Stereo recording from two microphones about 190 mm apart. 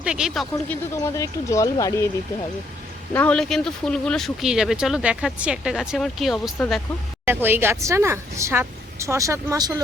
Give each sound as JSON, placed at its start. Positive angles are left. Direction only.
{"t": 0.0, "sound": "speech", "side_deg": -5}
{"t": 0.5, "sound": "speech", "side_deg": 15}
{"t": 3.1, "sound": "speech", "side_deg": 10}
{"t": 7.3, "sound": "a woman's voice", "side_deg": -10}